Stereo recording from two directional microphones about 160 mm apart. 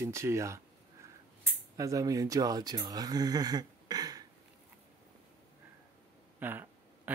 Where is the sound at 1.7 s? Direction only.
20° right (ahead or behind).